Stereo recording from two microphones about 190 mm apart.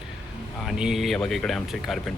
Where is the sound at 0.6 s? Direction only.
Centre (ahead or behind).